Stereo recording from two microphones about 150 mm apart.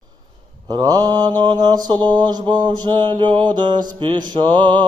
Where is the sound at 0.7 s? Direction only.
30° right (ahead or behind).